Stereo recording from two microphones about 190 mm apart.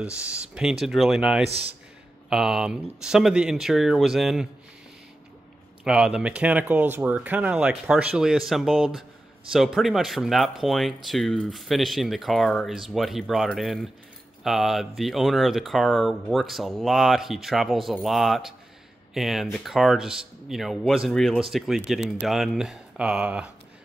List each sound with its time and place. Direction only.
0.0 s speech: 5° right (ahead or behind)
1.5 s a man's voice: 30° right (ahead or behind)
2.2 s speech: centre (ahead or behind)
5.9 s speech: 5° right (ahead or behind)